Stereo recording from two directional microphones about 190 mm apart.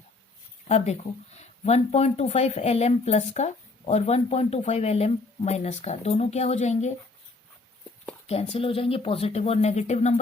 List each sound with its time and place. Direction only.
1.4 s speech: 35° left (ahead or behind)
8.3 s speech: 30° left (ahead or behind)